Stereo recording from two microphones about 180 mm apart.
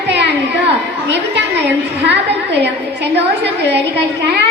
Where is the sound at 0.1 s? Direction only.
75° right (ahead or behind).